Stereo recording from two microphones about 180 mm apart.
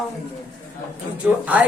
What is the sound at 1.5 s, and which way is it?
Speech, 10° right (ahead or behind).